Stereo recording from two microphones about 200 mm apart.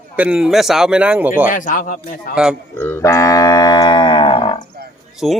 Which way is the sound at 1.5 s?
40° left (ahead or behind).